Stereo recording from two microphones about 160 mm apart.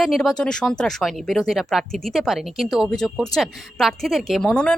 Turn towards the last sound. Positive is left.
turn(degrees=5)  # may be behind; listen again after turning